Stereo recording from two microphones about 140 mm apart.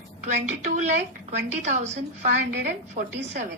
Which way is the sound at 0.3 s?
60° right (ahead or behind).